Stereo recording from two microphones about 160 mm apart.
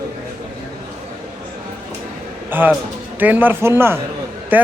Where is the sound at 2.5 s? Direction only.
10° right (ahead or behind).